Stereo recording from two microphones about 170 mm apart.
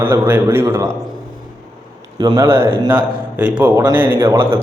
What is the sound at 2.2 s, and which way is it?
A man's voice, 20° right (ahead or behind).